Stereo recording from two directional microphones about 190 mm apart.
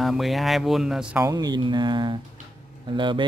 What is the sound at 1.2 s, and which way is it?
Speech, 20° right (ahead or behind).